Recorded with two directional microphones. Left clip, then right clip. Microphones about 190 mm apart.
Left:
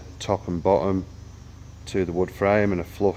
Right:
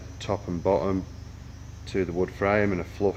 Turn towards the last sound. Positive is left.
turn(degrees=40)  # may be behind; listen again after turning